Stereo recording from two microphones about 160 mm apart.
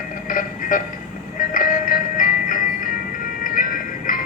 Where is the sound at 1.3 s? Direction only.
55° left (ahead or behind).